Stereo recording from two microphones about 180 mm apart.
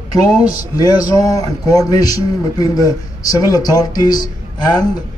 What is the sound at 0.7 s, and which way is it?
A man's voice, 20° left (ahead or behind).